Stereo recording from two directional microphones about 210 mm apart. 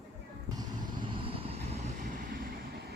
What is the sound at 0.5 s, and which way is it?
Vehicle, 20° right (ahead or behind).